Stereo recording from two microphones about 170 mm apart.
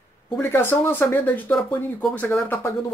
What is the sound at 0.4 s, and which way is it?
Speech, 10° left (ahead or behind).